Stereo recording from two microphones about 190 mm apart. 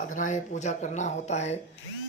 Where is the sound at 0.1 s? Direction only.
40° left (ahead or behind).